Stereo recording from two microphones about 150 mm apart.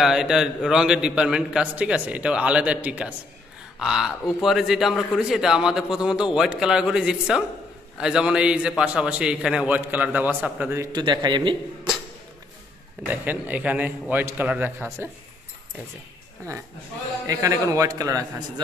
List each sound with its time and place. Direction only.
0.0 s a man's voice: 5° right (ahead or behind)
10.9 s a man's voice: 30° right (ahead or behind)
13.1 s a man's voice: 10° right (ahead or behind)
17.3 s a man's voice: 20° right (ahead or behind)